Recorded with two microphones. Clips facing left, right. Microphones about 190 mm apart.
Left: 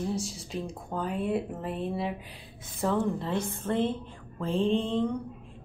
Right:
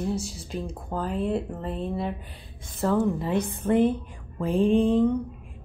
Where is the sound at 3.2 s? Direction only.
15° right (ahead or behind).